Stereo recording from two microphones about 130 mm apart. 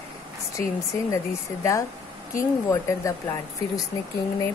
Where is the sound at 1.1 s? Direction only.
25° left (ahead or behind).